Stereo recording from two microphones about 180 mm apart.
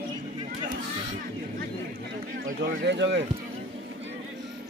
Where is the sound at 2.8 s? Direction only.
75° right (ahead or behind).